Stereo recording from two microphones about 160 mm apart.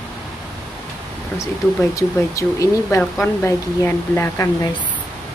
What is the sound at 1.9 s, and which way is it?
Speech, 20° left (ahead or behind).